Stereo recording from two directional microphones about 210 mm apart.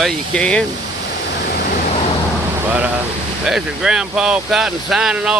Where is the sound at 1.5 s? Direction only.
45° left (ahead or behind).